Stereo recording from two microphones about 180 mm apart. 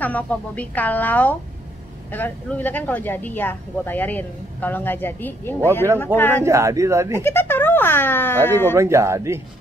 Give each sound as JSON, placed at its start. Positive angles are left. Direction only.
{"t": 0.0, "sound": "a woman's voice", "side_deg": 10}
{"t": 6.4, "sound": "speech", "side_deg": -15}
{"t": 7.2, "sound": "speech", "side_deg": 10}
{"t": 8.7, "sound": "speech", "side_deg": -15}